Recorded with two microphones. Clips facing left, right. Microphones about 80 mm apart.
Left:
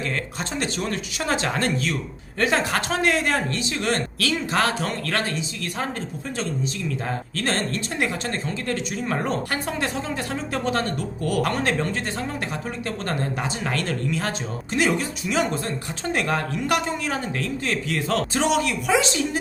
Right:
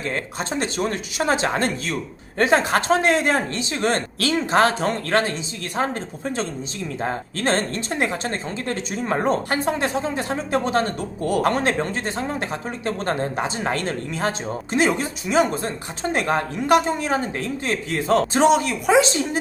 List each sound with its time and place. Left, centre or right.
0.5 s speech: right